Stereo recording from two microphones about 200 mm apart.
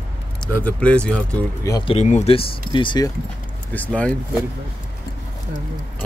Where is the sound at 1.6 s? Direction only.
20° left (ahead or behind).